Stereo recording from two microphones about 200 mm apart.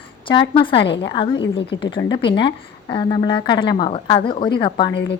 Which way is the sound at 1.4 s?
60° left (ahead or behind).